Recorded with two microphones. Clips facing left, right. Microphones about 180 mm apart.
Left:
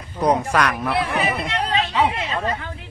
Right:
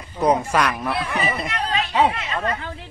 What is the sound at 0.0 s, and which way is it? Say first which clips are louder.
Speech: even; centre (ahead or behind).